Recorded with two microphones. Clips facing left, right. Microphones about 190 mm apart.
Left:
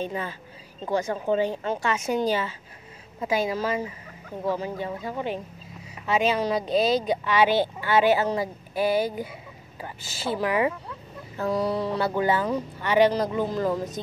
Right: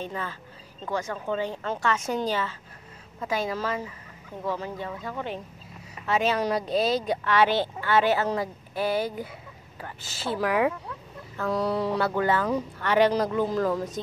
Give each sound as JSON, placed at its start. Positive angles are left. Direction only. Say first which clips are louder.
{"t": 0.0, "sound": "a woman's voice", "louder": "left 3 dB", "side_deg": 15}